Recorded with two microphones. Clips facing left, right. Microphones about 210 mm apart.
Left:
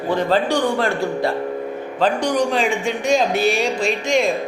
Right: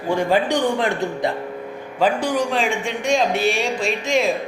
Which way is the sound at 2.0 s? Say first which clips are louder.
Left 1 dB; 5° right (ahead or behind).